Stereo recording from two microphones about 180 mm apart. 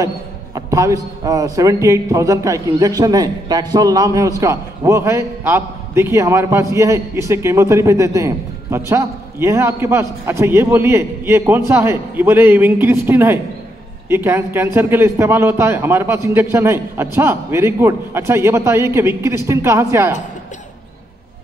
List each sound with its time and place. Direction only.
0.6 s a man's voice: 20° right (ahead or behind)